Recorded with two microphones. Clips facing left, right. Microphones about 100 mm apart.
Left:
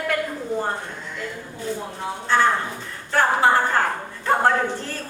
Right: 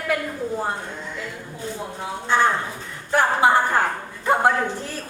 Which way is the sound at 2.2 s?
15° right (ahead or behind).